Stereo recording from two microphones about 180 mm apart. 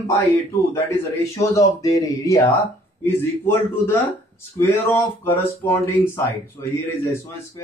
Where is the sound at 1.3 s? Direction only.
15° left (ahead or behind).